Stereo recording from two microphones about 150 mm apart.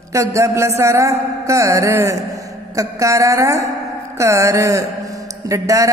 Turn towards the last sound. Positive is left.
turn(degrees=-20)  # may be behind; listen again after turning